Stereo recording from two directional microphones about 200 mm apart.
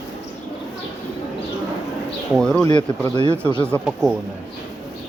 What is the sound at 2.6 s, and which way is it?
Speech, 20° left (ahead or behind).